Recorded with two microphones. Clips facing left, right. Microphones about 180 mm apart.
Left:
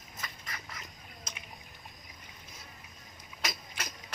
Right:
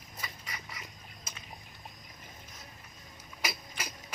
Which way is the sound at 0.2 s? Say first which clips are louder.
Even; 10° right (ahead or behind).